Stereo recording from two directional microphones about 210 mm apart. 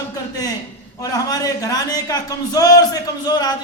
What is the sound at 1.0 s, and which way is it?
A man's voice, 15° left (ahead or behind).